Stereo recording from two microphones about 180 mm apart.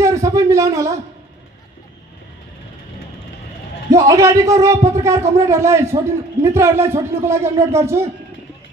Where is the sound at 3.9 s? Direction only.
20° right (ahead or behind).